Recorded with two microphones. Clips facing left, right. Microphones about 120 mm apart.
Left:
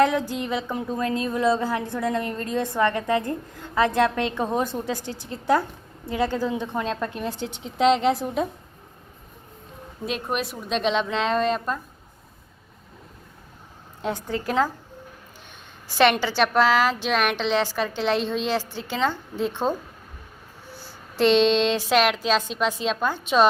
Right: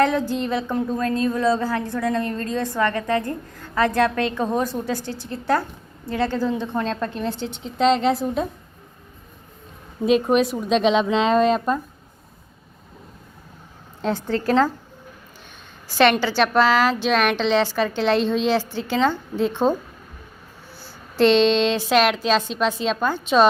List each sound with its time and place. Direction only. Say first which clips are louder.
0.0 s a woman's voice: right 1 dB; 10° left (ahead or behind)
10.1 s speech: right 10 dB; centre (ahead or behind)
14.0 s a woman's voice: right 4 dB; 10° left (ahead or behind)
16.0 s a woman's voice: right 2 dB; 15° left (ahead or behind)
21.2 s a woman's voice: right 2 dB; 5° left (ahead or behind)